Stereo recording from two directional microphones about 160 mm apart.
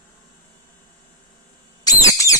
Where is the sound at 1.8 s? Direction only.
20° left (ahead or behind).